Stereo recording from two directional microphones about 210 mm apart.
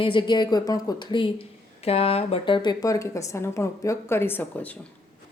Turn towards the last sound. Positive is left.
turn(degrees=10)  # may be behind; listen again after turning